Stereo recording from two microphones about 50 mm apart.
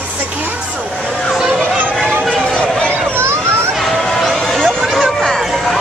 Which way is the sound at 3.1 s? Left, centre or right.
Right.